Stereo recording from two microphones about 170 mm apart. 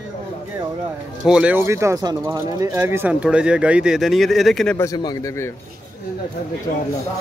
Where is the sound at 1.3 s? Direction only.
5° right (ahead or behind).